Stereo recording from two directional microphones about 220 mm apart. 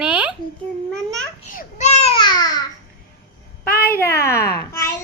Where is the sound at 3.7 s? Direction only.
45° left (ahead or behind).